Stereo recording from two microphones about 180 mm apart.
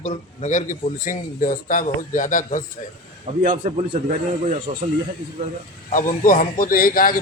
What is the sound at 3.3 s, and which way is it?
Speech, 45° right (ahead or behind).